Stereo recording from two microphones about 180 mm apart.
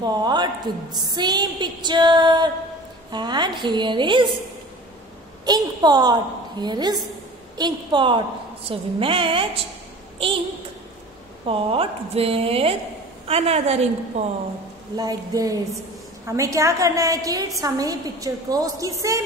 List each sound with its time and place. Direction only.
0.0 s a woman's voice: 25° right (ahead or behind)
5.4 s a woman's voice: 25° right (ahead or behind)
11.4 s speech: 30° right (ahead or behind)
15.0 s a woman's voice: 20° right (ahead or behind)